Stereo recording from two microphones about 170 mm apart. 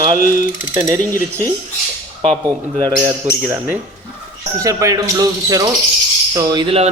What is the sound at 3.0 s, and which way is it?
Speech, 10° right (ahead or behind).